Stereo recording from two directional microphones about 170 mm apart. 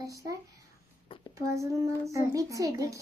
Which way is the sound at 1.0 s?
30° left (ahead or behind).